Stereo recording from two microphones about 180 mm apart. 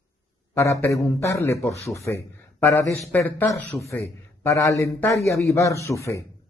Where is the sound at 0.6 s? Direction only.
15° left (ahead or behind).